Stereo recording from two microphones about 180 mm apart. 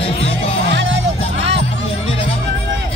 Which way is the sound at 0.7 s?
90° right.